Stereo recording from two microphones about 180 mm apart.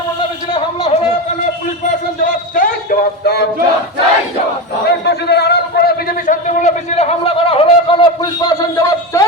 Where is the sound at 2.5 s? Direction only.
50° left (ahead or behind).